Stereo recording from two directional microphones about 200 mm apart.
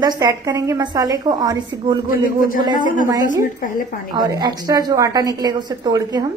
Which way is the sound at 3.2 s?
45° left (ahead or behind).